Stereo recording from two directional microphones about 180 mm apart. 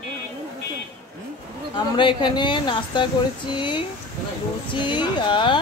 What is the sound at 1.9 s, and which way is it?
A woman's voice, 25° left (ahead or behind).